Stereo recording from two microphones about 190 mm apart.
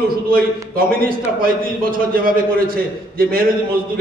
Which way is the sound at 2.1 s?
50° right (ahead or behind).